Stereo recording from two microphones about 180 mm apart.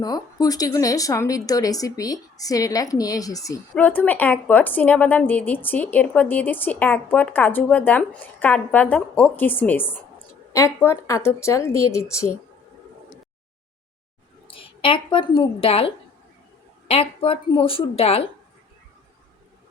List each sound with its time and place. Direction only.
0.0 s speech: 20° left (ahead or behind)
3.8 s speech: 10° left (ahead or behind)
14.4 s a woman's voice: 30° left (ahead or behind)
16.9 s a woman's voice: 30° left (ahead or behind)